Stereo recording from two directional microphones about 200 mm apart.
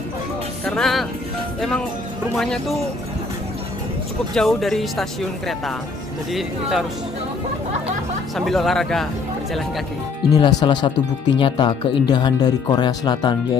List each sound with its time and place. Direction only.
0.7 s speech: centre (ahead or behind)
2.3 s speech: centre (ahead or behind)
4.4 s speech: centre (ahead or behind)
8.4 s speech: centre (ahead or behind)
10.3 s speech: 20° left (ahead or behind)